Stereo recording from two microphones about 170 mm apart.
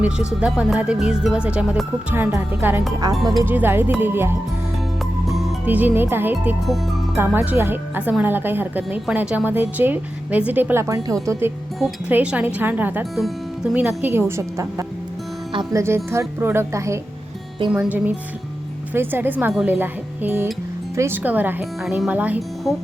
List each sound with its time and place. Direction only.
0.0 s a woman's voice: 5° right (ahead or behind)
5.3 s music: centre (ahead or behind)
5.6 s a woman's voice: 10° right (ahead or behind)